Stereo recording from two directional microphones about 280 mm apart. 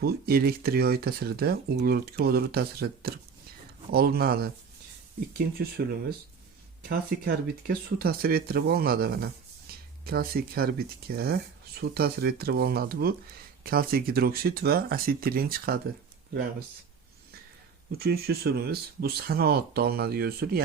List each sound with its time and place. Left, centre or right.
0.0 s speech: right
9.7 s a sound: right
10.1 s speech: right
17.9 s speech: right